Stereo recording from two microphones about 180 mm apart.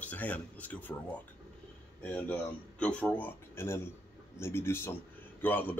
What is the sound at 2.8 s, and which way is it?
Speech, 5° left (ahead or behind).